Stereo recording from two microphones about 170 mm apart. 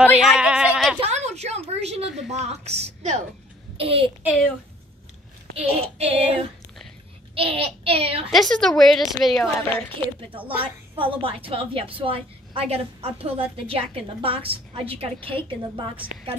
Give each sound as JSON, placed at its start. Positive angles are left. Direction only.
{"t": 0.0, "sound": "a sound", "side_deg": 0}
{"t": 1.0, "sound": "a sound", "side_deg": -40}
{"t": 2.3, "sound": "a woman's voice", "side_deg": -40}
{"t": 5.6, "sound": "a woman's voice", "side_deg": -35}
{"t": 8.3, "sound": "a woman's voice", "side_deg": 0}
{"t": 9.6, "sound": "a woman's voice", "side_deg": 10}
{"t": 10.6, "sound": "a woman's voice", "side_deg": -30}